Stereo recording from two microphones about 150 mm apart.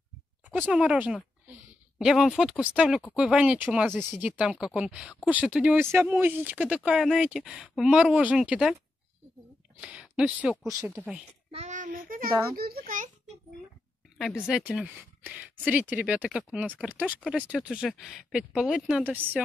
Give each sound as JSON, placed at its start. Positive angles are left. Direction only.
{"t": 0.5, "sound": "speech", "side_deg": -5}
{"t": 9.8, "sound": "speech", "side_deg": -5}
{"t": 11.0, "sound": "speech", "side_deg": -15}
{"t": 11.5, "sound": "a sound", "side_deg": -50}
{"t": 12.5, "sound": "a sound", "side_deg": -85}
{"t": 14.8, "sound": "speech", "side_deg": -10}
{"t": 16.6, "sound": "speech", "side_deg": 5}
{"t": 16.9, "sound": "speech", "side_deg": -10}